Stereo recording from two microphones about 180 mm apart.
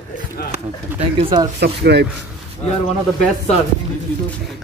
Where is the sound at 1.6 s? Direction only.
65° right (ahead or behind).